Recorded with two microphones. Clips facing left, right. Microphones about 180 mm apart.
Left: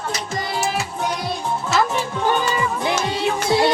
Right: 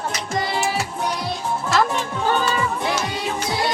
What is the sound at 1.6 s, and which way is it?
Music, 5° left (ahead or behind).